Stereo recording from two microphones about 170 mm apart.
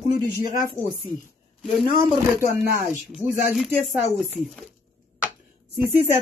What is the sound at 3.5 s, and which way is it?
Speech, 5° right (ahead or behind).